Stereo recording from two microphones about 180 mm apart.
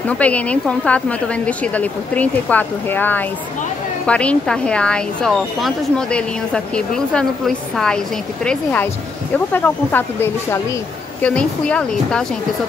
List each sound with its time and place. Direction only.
0.2 s a woman's voice: 10° left (ahead or behind)
9.5 s a woman's voice: 10° left (ahead or behind)